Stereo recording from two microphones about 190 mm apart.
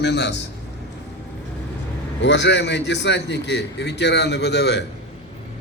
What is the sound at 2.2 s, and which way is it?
A man's voice, 65° left (ahead or behind).